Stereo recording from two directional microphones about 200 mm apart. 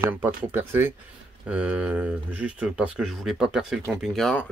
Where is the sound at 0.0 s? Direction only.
10° right (ahead or behind).